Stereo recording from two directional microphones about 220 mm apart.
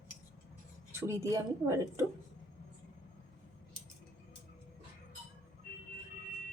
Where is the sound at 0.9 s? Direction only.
10° right (ahead or behind).